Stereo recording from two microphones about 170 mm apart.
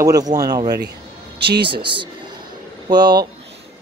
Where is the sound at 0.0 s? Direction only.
20° right (ahead or behind).